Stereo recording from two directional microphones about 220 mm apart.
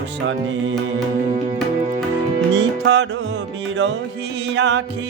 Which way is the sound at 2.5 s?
55° right (ahead or behind).